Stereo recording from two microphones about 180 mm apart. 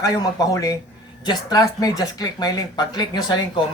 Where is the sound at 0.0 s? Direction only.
20° left (ahead or behind).